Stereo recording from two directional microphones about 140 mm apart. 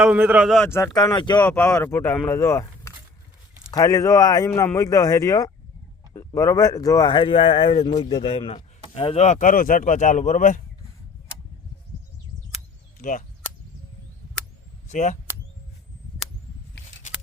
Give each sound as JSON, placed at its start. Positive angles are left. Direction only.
{"t": 0.0, "sound": "a man's voice", "side_deg": -10}
{"t": 0.8, "sound": "speech", "side_deg": 20}
{"t": 1.1, "sound": "speech", "side_deg": 30}
{"t": 1.4, "sound": "speech", "side_deg": 15}
{"t": 9.1, "sound": "speech", "side_deg": 55}
{"t": 13.0, "sound": "speech", "side_deg": 70}
{"t": 14.8, "sound": "speech", "side_deg": 60}